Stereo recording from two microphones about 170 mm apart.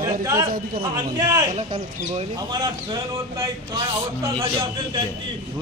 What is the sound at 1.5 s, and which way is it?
Speech, 40° right (ahead or behind).